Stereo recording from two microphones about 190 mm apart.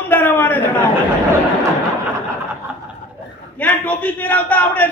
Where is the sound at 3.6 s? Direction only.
10° left (ahead or behind).